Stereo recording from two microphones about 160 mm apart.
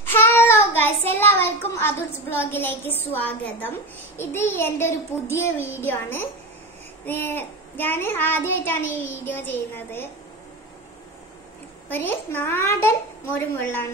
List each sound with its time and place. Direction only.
0.1 s child singing: 15° left (ahead or behind)
11.9 s child singing: 15° left (ahead or behind)